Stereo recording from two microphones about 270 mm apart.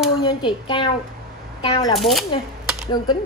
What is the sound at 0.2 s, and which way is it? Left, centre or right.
A child's voice, centre.